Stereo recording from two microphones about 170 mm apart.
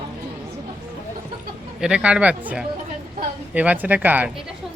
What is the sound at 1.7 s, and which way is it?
Speech, 5° right (ahead or behind).